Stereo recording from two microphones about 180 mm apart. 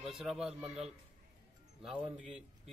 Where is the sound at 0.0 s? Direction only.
Centre (ahead or behind).